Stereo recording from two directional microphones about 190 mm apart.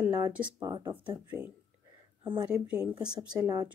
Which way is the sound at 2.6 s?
5° right (ahead or behind).